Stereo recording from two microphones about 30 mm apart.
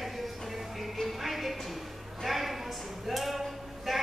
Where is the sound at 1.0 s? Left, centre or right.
Centre.